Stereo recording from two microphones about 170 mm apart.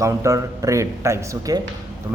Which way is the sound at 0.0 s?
15° right (ahead or behind).